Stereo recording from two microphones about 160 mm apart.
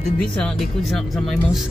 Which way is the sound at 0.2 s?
5° left (ahead or behind).